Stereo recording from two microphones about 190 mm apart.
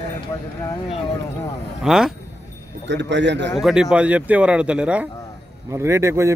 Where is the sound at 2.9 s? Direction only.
70° right (ahead or behind).